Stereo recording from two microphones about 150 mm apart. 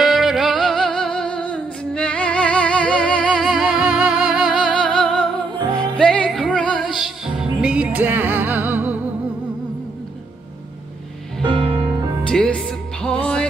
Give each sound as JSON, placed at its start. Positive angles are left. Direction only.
{"t": 0.0, "sound": "music", "side_deg": 0}
{"t": 11.4, "sound": "music", "side_deg": -35}
{"t": 12.3, "sound": "music", "side_deg": 5}